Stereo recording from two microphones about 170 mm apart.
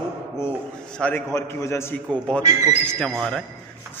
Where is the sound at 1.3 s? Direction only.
15° left (ahead or behind).